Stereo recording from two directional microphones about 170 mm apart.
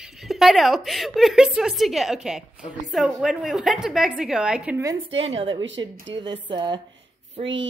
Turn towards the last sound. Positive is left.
turn(degrees=-35)  # may be behind; listen again after turning